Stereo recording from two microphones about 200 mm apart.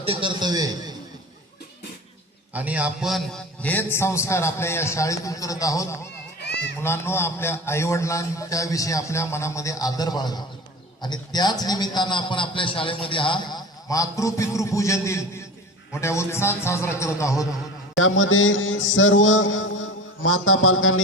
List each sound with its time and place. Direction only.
0.0 s a man's voice: 25° right (ahead or behind)
2.5 s a man's voice: 5° right (ahead or behind); by 6.0 s 15° left (ahead or behind)
6.4 s run: 55° left (ahead or behind)
6.8 s a man's voice: 10° left (ahead or behind)
17.9 s mantra: 75° left (ahead or behind)